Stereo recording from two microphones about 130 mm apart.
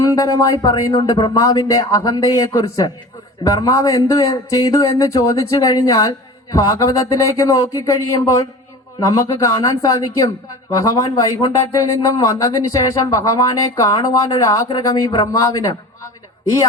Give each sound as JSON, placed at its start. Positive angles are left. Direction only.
{"t": 0.0, "sound": "a man's voice", "side_deg": 30}